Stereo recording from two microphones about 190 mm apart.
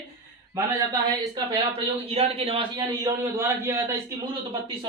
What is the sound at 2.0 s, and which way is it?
A man's voice, 30° right (ahead or behind).